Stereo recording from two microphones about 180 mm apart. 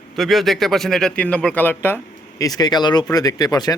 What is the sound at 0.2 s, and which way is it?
Speech, centre (ahead or behind).